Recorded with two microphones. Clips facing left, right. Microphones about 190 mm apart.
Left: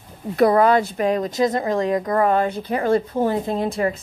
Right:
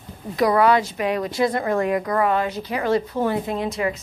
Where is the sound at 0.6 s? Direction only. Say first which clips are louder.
Left 1 dB; 45° left (ahead or behind).